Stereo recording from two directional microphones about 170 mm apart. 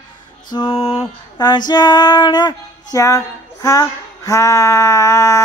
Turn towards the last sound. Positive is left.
turn(degrees=20)  # may be behind; listen again after turning